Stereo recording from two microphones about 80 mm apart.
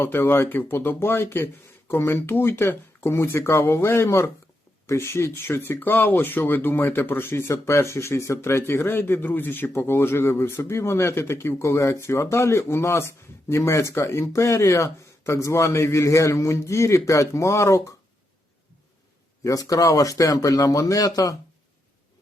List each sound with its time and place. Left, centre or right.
0.0 s speech: left
19.5 s speech: left